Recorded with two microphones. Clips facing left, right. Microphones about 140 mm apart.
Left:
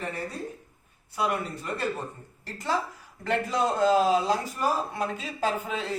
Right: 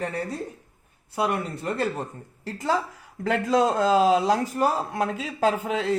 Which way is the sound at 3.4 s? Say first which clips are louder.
Right 4 dB; 90° right.